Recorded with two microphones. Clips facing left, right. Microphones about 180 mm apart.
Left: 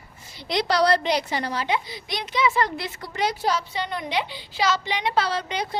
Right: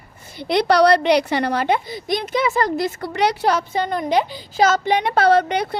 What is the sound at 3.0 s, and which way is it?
A woman's voice, 65° right (ahead or behind).